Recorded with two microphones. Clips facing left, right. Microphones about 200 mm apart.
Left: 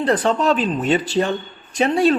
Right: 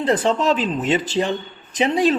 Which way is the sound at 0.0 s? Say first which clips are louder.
Left 1 dB; 25° right (ahead or behind).